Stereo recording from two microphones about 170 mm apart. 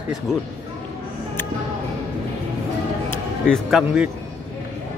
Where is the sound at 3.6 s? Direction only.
5° right (ahead or behind).